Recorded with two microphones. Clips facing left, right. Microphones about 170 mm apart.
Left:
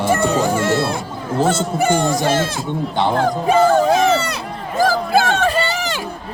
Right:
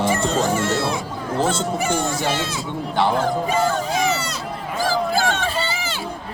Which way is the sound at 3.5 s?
60° left (ahead or behind).